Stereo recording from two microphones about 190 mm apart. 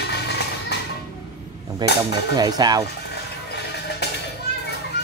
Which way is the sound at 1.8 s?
25° right (ahead or behind).